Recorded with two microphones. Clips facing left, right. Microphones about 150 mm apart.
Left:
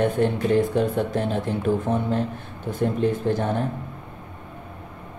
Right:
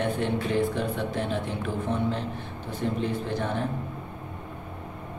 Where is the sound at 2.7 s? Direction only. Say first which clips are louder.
Left 6 dB; 45° left (ahead or behind).